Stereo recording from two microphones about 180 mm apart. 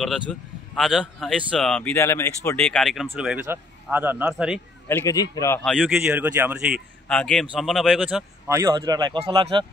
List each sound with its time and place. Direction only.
0.3 s a man's voice: centre (ahead or behind)
4.8 s a man's voice: 15° left (ahead or behind)
5.6 s a man's voice: 5° left (ahead or behind); by 9.7 s 25° right (ahead or behind)